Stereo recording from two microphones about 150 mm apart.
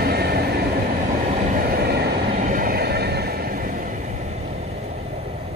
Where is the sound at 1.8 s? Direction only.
90° right; by 4.4 s 50° right (ahead or behind).